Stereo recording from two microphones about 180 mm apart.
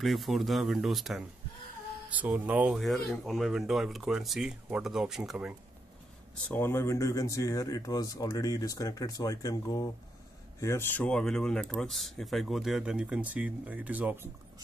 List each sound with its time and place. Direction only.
0.0 s speech: centre (ahead or behind)
6.5 s speech: 15° left (ahead or behind); by 14.3 s 10° right (ahead or behind)